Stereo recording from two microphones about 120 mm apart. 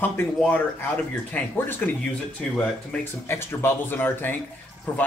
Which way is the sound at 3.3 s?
20° left (ahead or behind).